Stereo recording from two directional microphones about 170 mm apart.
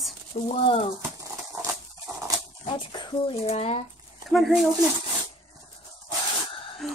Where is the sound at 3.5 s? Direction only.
40° left (ahead or behind).